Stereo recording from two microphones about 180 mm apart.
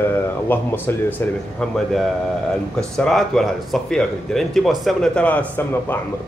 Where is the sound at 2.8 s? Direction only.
5° left (ahead or behind).